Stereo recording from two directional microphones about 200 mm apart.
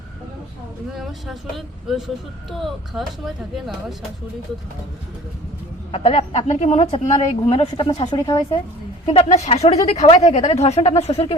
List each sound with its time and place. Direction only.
0.9 s speech: centre (ahead or behind)
5.9 s speech: 30° left (ahead or behind)
9.1 s a woman's voice: 30° left (ahead or behind)